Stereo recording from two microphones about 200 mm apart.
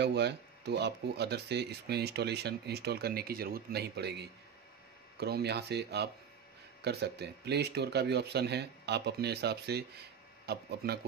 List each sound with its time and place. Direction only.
0.0 s speech: 55° right (ahead or behind)